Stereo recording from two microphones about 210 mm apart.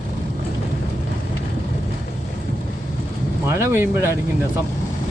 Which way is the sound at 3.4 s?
10° right (ahead or behind).